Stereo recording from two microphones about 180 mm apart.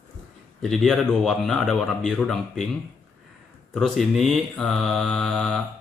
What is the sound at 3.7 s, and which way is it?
Speech, centre (ahead or behind).